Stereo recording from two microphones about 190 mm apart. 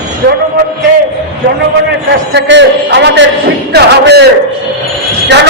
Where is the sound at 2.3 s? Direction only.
65° right (ahead or behind).